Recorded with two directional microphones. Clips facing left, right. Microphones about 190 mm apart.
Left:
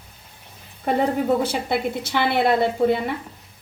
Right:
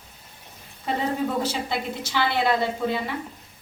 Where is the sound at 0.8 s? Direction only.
60° left (ahead or behind).